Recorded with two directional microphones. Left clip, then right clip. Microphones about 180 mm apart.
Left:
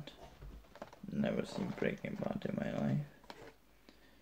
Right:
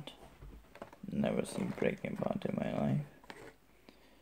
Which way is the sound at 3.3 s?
15° right (ahead or behind).